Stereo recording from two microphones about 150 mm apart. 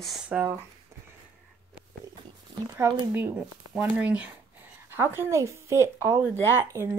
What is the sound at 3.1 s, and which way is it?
Speech, 10° right (ahead or behind).